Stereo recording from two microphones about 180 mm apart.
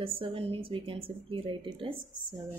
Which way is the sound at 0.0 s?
30° right (ahead or behind).